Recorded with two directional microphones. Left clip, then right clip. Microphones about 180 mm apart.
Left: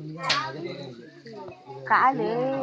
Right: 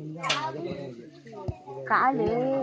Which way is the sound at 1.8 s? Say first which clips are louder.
Left 3 dB; 40° right (ahead or behind).